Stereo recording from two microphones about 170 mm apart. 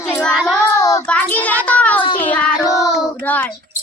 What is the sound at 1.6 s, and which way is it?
Music, 10° left (ahead or behind).